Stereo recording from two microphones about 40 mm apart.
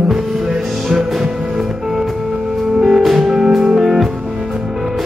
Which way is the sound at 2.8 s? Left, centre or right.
Centre.